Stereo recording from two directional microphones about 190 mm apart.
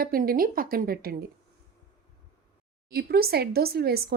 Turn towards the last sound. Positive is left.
turn(degrees=-55)  # may be behind; listen again after turning